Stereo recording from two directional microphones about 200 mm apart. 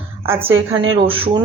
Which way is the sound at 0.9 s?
25° right (ahead or behind).